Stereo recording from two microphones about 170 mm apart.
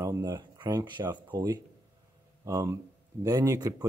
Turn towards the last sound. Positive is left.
turn(degrees=-20)  # may be behind; listen again after turning